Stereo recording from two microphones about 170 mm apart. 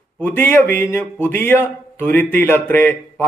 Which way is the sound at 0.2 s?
10° left (ahead or behind).